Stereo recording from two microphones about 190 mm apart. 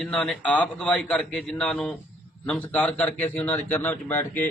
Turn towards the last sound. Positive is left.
turn(degrees=10)  # may be behind; listen again after turning